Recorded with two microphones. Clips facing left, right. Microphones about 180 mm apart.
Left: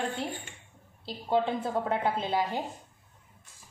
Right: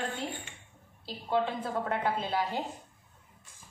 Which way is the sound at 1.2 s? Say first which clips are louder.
Left 3 dB; 25° left (ahead or behind).